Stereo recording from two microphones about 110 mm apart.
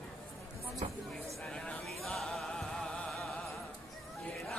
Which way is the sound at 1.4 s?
10° left (ahead or behind).